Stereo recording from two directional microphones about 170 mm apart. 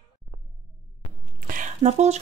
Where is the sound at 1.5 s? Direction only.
50° right (ahead or behind).